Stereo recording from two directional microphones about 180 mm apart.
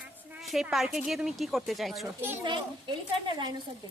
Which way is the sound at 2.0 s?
10° right (ahead or behind).